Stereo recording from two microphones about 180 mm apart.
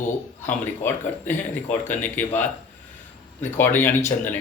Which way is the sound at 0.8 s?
10° left (ahead or behind).